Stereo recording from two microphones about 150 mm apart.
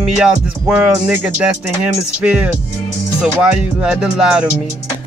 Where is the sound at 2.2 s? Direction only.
5° right (ahead or behind).